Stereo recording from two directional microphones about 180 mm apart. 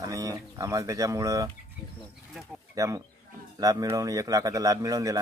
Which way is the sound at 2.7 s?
20° right (ahead or behind).